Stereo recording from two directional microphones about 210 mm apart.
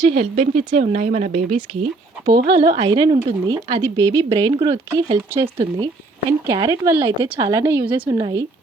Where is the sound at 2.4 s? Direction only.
20° right (ahead or behind).